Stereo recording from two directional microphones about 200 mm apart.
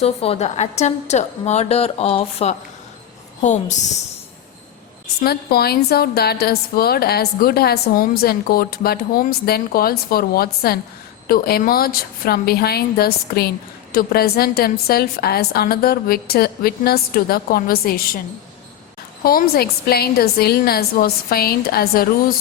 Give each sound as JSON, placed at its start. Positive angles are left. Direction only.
{"t": 0.0, "sound": "a woman's voice", "side_deg": 30}
{"t": 5.2, "sound": "a woman's voice", "side_deg": 50}
{"t": 19.2, "sound": "a woman's voice", "side_deg": 45}